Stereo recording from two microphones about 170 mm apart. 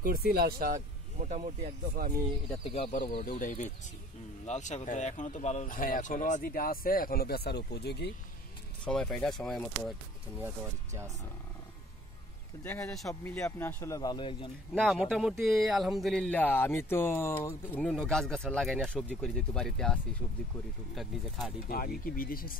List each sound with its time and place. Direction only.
0.0 s speech: 60° right (ahead or behind); by 1.7 s 40° right (ahead or behind)
2.0 s speech: 60° right (ahead or behind)
2.6 s speech: 35° left (ahead or behind)
3.2 s speech: 55° left (ahead or behind); by 8.1 s 80° left
8.8 s speech: 5° left (ahead or behind)
10.4 s speech: 15° right (ahead or behind)
12.6 s speech: 15° left (ahead or behind)
15.0 s speech: centre (ahead or behind)
21.6 s speech: 60° left (ahead or behind)